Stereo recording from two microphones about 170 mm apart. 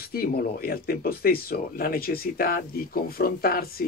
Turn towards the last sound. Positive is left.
turn(degrees=60)  # may be behind; listen again after turning